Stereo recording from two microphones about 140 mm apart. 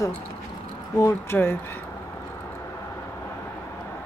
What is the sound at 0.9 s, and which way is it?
Vehicle, 20° left (ahead or behind).